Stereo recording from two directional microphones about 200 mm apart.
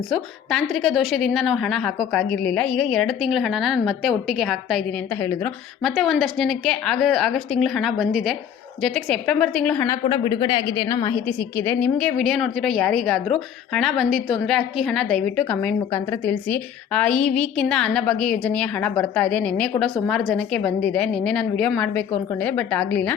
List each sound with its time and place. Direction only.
0.1 s a woman's voice: centre (ahead or behind)
5.2 s a woman's voice: 10° left (ahead or behind)
5.8 s a woman's voice: centre (ahead or behind)